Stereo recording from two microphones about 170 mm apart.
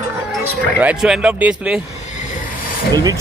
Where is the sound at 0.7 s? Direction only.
5° right (ahead or behind).